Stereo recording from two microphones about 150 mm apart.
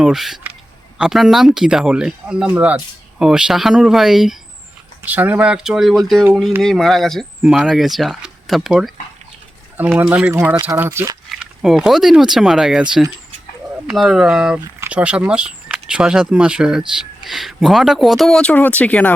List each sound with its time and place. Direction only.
0.0 s speech: centre (ahead or behind)
10.0 s speech: 10° right (ahead or behind)
11.3 s speech: centre (ahead or behind)